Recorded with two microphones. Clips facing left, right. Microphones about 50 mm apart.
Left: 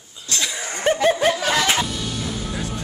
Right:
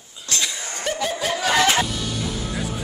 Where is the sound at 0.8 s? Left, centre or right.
Left.